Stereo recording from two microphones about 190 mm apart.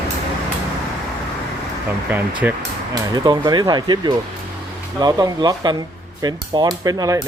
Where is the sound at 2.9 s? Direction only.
20° right (ahead or behind).